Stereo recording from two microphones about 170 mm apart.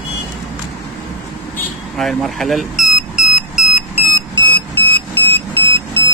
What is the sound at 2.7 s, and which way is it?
Smoke detector, 45° left (ahead or behind).